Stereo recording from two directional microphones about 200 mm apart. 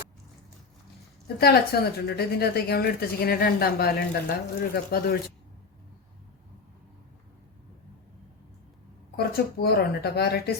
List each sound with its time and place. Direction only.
1.4 s a woman's voice: 50° left (ahead or behind)
9.1 s a woman's voice: 50° left (ahead or behind)